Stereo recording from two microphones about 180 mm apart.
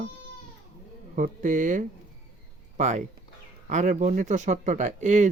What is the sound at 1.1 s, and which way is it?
Speech, 45° right (ahead or behind).